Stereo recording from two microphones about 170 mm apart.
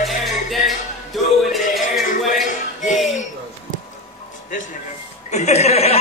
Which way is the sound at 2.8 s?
Centre (ahead or behind).